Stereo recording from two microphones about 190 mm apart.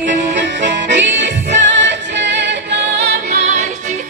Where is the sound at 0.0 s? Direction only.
65° right (ahead or behind).